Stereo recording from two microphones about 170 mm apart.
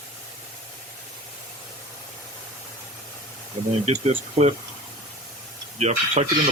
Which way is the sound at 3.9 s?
40° right (ahead or behind).